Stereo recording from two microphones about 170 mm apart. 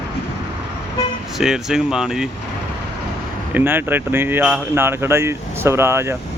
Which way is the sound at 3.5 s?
10° right (ahead or behind).